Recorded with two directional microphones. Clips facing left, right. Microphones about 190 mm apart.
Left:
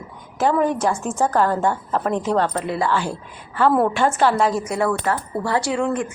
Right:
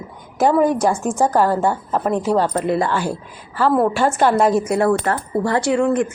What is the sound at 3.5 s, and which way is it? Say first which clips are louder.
Speech: right 1 dB; 5° right (ahead or behind).